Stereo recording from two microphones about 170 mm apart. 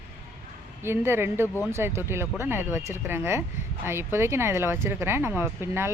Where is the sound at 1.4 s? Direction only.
15° left (ahead or behind).